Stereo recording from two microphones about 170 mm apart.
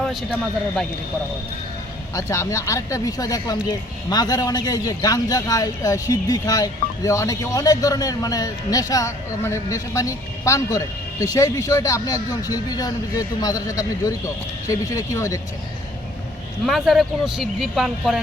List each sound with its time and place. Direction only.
0.0 s a sound: centre (ahead or behind)
2.1 s speech: 20° left (ahead or behind)
16.6 s speech: centre (ahead or behind)